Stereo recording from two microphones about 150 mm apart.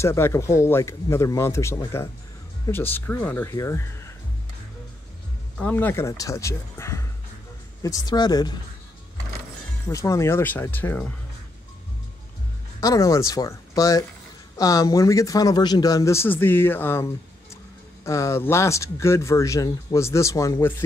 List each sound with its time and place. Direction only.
0.0 s a man's voice: 20° left (ahead or behind)
5.6 s a man's voice: 10° left (ahead or behind); by 8.5 s 30° left (ahead or behind)
9.8 s speech: 20° left (ahead or behind)
12.8 s a man's voice: 20° left (ahead or behind)